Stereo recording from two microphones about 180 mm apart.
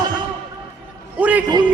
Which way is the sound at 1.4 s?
25° right (ahead or behind).